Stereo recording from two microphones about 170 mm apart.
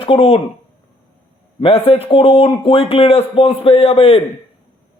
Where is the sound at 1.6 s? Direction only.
35° left (ahead or behind).